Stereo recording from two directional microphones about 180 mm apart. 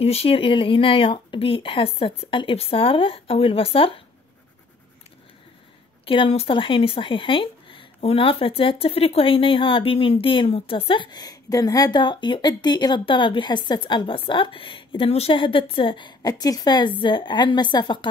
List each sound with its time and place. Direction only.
0.0 s speech: 35° left (ahead or behind)
6.0 s speech: 30° left (ahead or behind)